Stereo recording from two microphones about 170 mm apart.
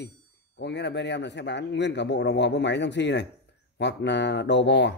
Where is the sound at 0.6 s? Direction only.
90° left.